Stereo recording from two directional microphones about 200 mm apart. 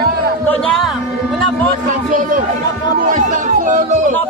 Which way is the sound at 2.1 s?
40° right (ahead or behind).